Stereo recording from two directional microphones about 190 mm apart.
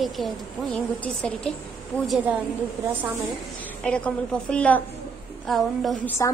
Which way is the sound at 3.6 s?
5° left (ahead or behind).